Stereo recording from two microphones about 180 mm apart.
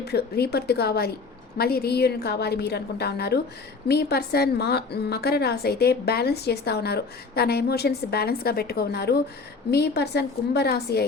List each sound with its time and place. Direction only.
0.0 s a woman's voice: 65° left (ahead or behind)